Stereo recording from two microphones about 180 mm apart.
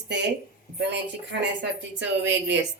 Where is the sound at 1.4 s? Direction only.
85° right.